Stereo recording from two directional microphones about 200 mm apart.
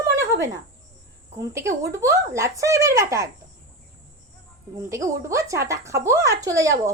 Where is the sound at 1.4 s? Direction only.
15° right (ahead or behind).